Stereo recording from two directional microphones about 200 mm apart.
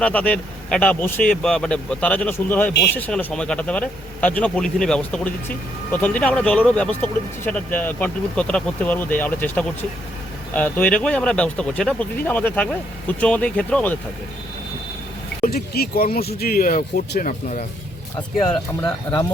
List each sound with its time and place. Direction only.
0.0 s speech: 5° left (ahead or behind)
15.4 s speech: 50° left (ahead or behind)